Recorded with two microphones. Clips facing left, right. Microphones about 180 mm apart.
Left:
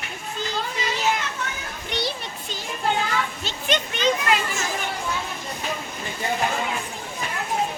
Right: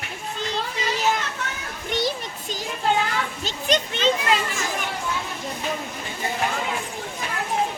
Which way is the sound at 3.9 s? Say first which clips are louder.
Left 2 dB; 25° right (ahead or behind).